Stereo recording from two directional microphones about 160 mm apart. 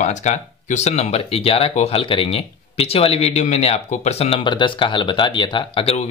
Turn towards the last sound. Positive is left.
turn(degrees=30)  # may be behind; listen again after turning